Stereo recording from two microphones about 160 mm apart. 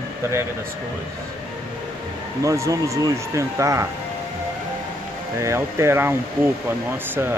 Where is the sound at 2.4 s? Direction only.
20° right (ahead or behind).